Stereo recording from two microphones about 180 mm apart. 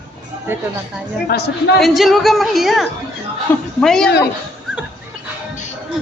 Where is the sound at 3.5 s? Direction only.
10° left (ahead or behind).